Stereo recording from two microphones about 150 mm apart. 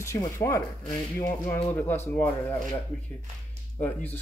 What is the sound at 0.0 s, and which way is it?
Speech, 20° left (ahead or behind).